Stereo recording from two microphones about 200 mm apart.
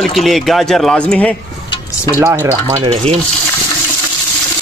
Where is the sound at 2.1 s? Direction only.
10° right (ahead or behind).